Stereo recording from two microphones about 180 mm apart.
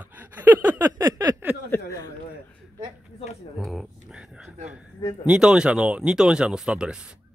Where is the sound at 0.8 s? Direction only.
20° right (ahead or behind).